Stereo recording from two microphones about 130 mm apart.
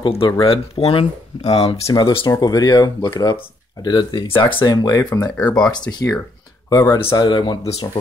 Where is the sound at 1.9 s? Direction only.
30° left (ahead or behind).